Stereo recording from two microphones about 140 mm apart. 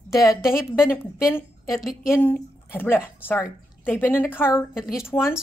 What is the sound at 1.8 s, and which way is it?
Speech, 5° right (ahead or behind).